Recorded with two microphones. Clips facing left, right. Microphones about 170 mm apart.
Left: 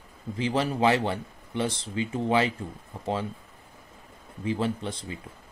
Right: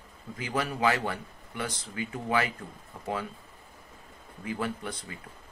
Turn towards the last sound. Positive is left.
turn(degrees=25)  # may be behind; listen again after turning